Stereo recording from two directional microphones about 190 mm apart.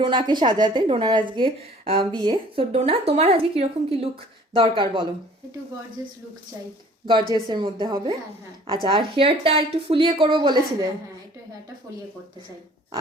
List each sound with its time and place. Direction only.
0.0 s a woman's voice: 25° right (ahead or behind)
6.0 s speech: 15° right (ahead or behind)
7.4 s a woman's voice: 25° right (ahead or behind)